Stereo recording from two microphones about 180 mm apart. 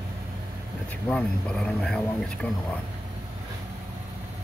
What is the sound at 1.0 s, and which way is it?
Speech, 5° left (ahead or behind).